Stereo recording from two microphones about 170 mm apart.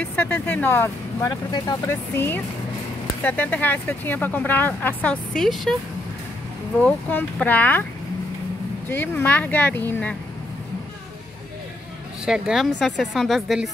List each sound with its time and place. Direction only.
0.0 s speech: 10° left (ahead or behind)
1.3 s speech: 25° left (ahead or behind)
1.9 s speech: 15° left (ahead or behind)
6.8 s speech: 10° left (ahead or behind)
8.8 s speech: 10° left (ahead or behind)
12.3 s speech: centre (ahead or behind)